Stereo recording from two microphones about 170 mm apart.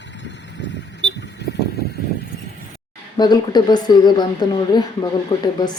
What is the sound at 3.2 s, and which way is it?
A woman's voice, 25° left (ahead or behind).